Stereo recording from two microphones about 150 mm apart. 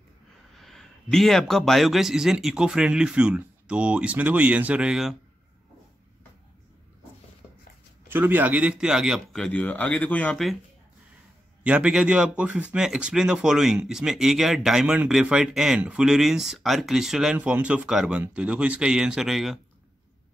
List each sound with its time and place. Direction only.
0.6 s a man's voice: centre (ahead or behind)
8.1 s a man's voice: 15° right (ahead or behind)
11.6 s a man's voice: 10° right (ahead or behind)